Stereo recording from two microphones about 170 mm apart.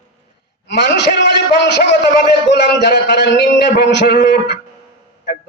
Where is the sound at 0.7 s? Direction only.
90° left.